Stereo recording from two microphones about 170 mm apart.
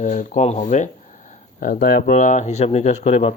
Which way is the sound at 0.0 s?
45° left (ahead or behind).